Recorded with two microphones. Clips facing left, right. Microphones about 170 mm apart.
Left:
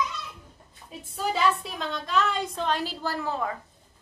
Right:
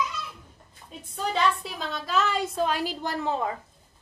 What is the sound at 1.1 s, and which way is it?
A woman's voice, 5° left (ahead or behind).